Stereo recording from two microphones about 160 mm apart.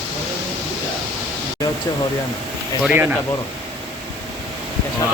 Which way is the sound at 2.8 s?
10° right (ahead or behind).